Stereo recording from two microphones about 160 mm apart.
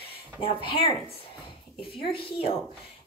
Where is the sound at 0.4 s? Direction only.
35° left (ahead or behind).